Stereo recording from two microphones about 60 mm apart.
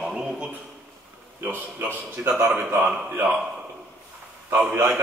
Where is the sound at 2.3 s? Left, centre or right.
Centre.